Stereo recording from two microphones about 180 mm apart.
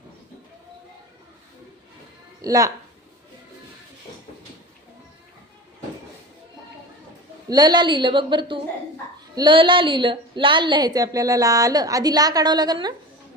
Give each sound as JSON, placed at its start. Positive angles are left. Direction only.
{"t": 2.4, "sound": "a woman's voice", "side_deg": -20}
{"t": 7.5, "sound": "a woman's voice", "side_deg": -25}